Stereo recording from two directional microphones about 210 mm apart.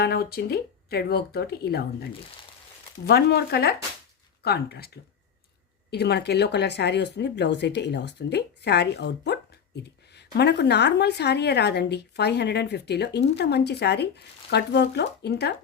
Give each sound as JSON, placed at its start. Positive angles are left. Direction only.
{"t": 0.0, "sound": "speech", "side_deg": 50}
{"t": 3.1, "sound": "speech", "side_deg": 50}
{"t": 5.9, "sound": "speech", "side_deg": 50}